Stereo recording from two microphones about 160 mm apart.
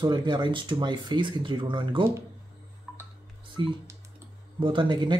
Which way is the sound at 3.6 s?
30° right (ahead or behind).